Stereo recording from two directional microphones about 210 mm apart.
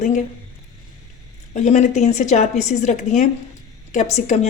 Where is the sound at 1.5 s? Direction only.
35° left (ahead or behind).